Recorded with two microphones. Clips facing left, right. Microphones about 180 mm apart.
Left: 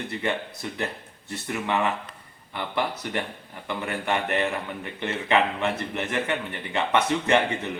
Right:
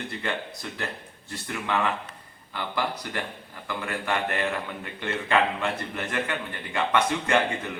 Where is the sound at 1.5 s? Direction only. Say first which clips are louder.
Left 2 dB; 20° left (ahead or behind).